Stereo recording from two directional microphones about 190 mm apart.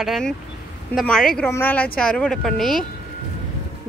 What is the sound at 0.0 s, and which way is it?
Speech, centre (ahead or behind).